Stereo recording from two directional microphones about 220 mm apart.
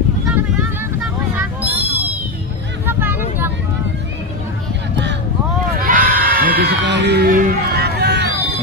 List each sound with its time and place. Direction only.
1.3 s a sound: 10° right (ahead or behind)
2.9 s vehicle: 10° right (ahead or behind)
5.8 s crowd: 40° right (ahead or behind)